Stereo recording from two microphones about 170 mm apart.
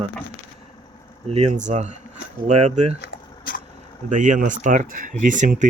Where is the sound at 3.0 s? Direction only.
55° left (ahead or behind).